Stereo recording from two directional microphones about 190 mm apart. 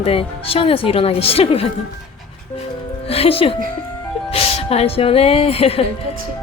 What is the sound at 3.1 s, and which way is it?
Speech, 30° left (ahead or behind).